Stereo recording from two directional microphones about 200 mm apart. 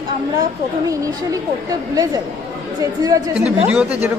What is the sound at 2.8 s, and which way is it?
A woman's voice, 15° right (ahead or behind).